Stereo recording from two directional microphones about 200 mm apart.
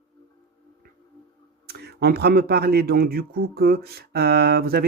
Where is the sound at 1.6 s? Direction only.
55° right (ahead or behind).